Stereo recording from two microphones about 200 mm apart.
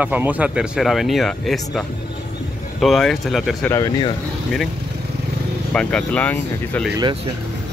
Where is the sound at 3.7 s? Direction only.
20° left (ahead or behind).